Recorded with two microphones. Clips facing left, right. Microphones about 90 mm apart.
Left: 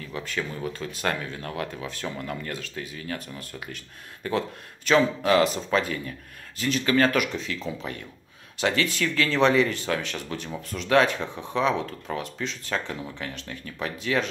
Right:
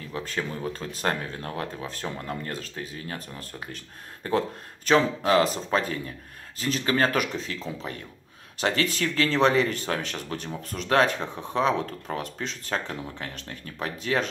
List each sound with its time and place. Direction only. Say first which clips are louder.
0.1 s speech: right 1 dB; 40° right (ahead or behind)